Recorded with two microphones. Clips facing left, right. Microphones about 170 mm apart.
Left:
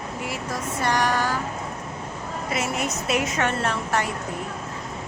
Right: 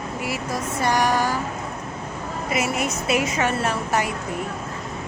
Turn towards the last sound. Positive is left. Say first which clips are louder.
# right 2 dB
turn(degrees=-10)  # may be behind; listen again after turning